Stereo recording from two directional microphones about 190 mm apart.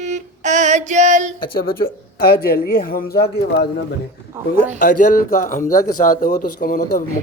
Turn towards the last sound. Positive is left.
turn(degrees=45)  # may be behind; listen again after turning